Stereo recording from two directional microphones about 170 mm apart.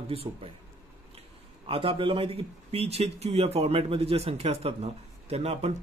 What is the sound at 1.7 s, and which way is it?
Speech, 35° right (ahead or behind).